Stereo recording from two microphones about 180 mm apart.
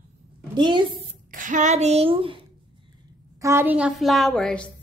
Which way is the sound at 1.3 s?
45° right (ahead or behind).